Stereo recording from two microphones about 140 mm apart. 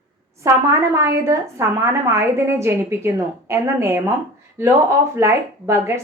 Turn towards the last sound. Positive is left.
turn(degrees=-20)  # may be behind; listen again after turning